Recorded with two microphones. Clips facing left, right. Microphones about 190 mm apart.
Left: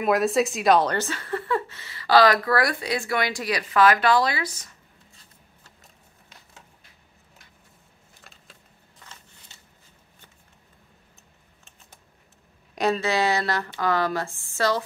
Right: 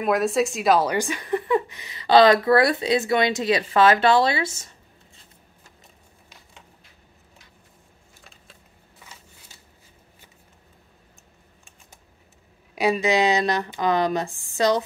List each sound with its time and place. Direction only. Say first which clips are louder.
0.0 s a woman's voice: even; centre (ahead or behind); by 4.7 s 25° right (ahead or behind)
9.0 s a sound: right 1 dB; 10° right (ahead or behind)
12.7 s speech: right 3 dB; 10° right (ahead or behind)